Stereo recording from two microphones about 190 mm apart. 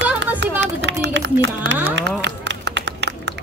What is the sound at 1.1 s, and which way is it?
Speech, 65° right (ahead or behind).